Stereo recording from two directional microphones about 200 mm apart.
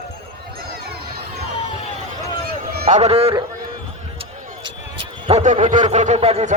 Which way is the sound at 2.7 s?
50° right (ahead or behind).